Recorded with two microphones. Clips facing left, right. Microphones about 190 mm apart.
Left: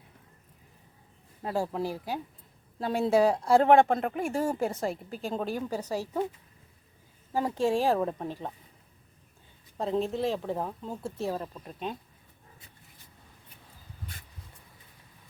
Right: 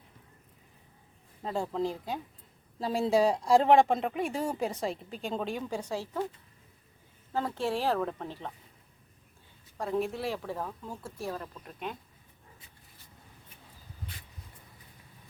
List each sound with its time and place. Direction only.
1.4 s speech: 10° left (ahead or behind)
7.3 s speech: 15° left (ahead or behind)
9.7 s speech: 25° left (ahead or behind)